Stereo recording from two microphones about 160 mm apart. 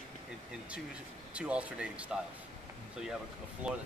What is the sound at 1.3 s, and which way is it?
Speech, 10° right (ahead or behind).